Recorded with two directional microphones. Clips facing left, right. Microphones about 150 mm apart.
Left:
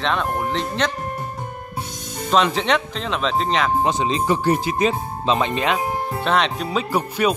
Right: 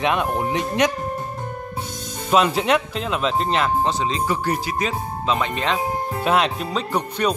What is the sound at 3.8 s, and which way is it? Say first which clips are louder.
Speech: left 1 dB; 20° left (ahead or behind).